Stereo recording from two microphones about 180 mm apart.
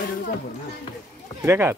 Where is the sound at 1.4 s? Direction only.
15° right (ahead or behind).